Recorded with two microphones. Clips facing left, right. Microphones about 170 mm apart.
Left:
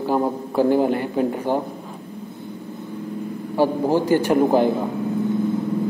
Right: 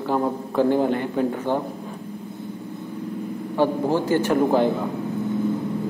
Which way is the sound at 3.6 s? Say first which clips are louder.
Left 2 dB; 10° left (ahead or behind).